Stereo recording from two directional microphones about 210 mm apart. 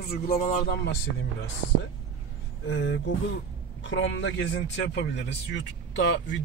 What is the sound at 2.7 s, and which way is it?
Speech, 65° left (ahead or behind).